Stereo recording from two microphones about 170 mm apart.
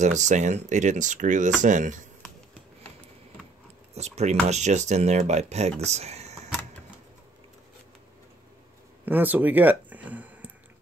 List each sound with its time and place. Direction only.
0.0 s speech: 45° right (ahead or behind)
3.9 s speech: 40° right (ahead or behind)
5.8 s a sound: 40° right (ahead or behind)
9.0 s speech: 10° right (ahead or behind)